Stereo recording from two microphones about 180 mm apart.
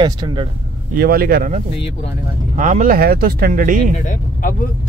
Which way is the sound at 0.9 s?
60° right (ahead or behind).